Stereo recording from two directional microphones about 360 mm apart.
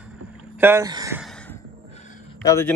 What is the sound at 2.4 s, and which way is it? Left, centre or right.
Speech, centre.